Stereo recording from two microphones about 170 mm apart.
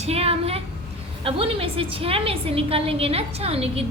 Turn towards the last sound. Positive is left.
turn(degrees=-35)  # may be behind; listen again after turning